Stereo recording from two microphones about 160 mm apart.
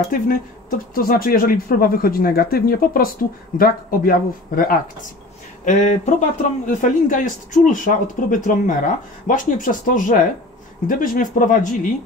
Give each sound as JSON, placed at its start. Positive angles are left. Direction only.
{"t": 0.1, "sound": "speech", "side_deg": 60}